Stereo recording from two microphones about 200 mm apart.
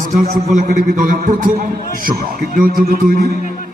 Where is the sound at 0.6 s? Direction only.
45° right (ahead or behind).